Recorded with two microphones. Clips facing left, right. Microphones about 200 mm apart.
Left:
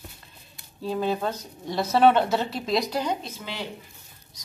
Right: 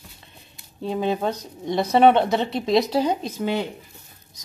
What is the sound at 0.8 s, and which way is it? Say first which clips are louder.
Speech: right 3 dB; 20° right (ahead or behind).